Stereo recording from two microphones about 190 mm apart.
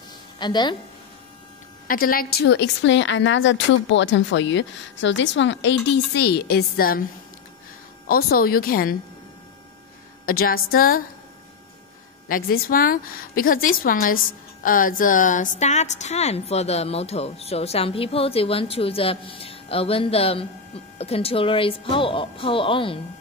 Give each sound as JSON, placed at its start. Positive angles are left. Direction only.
{"t": 0.4, "sound": "a woman's voice", "side_deg": 25}
{"t": 1.9, "sound": "a woman's voice", "side_deg": 50}
{"t": 5.9, "sound": "a woman's voice", "side_deg": 60}
{"t": 8.1, "sound": "a woman's voice", "side_deg": 50}
{"t": 10.2, "sound": "a woman's voice", "side_deg": 50}
{"t": 12.3, "sound": "a woman's voice", "side_deg": 50}